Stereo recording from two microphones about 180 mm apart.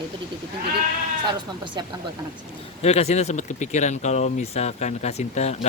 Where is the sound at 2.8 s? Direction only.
35° left (ahead or behind).